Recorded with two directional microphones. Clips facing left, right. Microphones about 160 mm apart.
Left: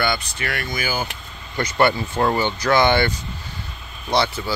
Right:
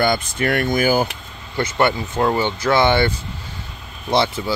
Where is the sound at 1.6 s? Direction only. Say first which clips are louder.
Even; 20° right (ahead or behind).